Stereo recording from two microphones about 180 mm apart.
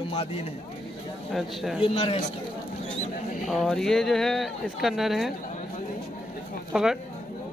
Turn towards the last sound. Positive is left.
turn(degrees=-5)  # may be behind; listen again after turning